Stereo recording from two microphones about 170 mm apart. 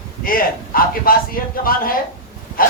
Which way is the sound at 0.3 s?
60° left (ahead or behind).